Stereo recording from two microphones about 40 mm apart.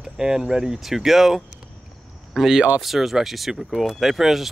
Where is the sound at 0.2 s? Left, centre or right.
Centre.